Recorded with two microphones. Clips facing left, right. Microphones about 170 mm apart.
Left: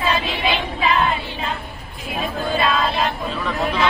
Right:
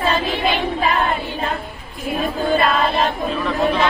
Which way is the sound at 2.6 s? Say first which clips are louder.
Right 1 dB; 50° right (ahead or behind).